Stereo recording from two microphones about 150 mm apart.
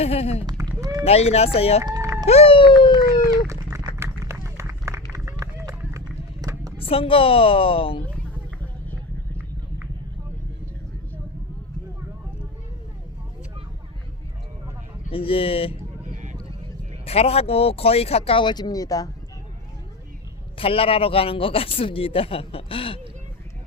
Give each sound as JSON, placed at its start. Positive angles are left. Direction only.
{"t": 0.0, "sound": "speech", "side_deg": 45}
{"t": 0.4, "sound": "run", "side_deg": -25}
{"t": 1.0, "sound": "speech", "side_deg": 45}
{"t": 1.8, "sound": "run", "side_deg": -20}
{"t": 2.2, "sound": "speech", "side_deg": 40}
{"t": 3.4, "sound": "a sound", "side_deg": -20}
{"t": 4.2, "sound": "run", "side_deg": -20}
{"t": 6.4, "sound": "a sound", "side_deg": -25}
{"t": 6.7, "sound": "speech", "side_deg": 40}
{"t": 15.1, "sound": "speech", "side_deg": 40}
{"t": 17.1, "sound": "speech", "side_deg": 40}
{"t": 20.6, "sound": "speech", "side_deg": 40}